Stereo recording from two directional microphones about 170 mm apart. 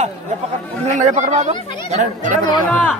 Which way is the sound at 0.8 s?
45° right (ahead or behind).